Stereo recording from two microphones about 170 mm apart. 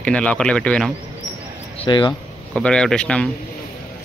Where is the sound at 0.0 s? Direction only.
5° left (ahead or behind).